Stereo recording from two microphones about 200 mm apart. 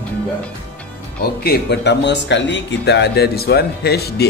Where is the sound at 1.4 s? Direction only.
55° left (ahead or behind).